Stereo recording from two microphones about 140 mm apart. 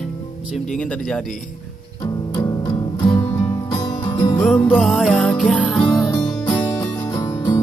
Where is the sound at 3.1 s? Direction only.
20° left (ahead or behind).